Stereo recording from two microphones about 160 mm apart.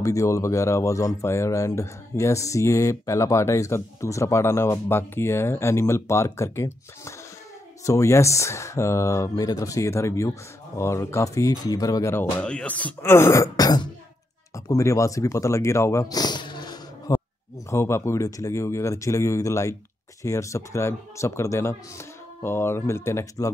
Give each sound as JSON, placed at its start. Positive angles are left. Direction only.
{"t": 0.0, "sound": "speech", "side_deg": 20}
{"t": 17.1, "sound": "a sound", "side_deg": 20}
{"t": 17.6, "sound": "speech", "side_deg": 15}